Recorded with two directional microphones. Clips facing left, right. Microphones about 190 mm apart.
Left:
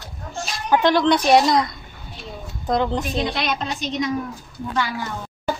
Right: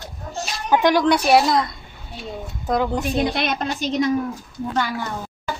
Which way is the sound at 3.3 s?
50° right (ahead or behind).